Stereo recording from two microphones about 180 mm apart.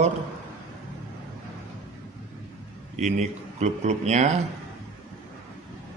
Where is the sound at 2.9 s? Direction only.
40° right (ahead or behind).